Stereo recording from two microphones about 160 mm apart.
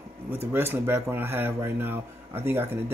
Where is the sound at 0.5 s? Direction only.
15° right (ahead or behind).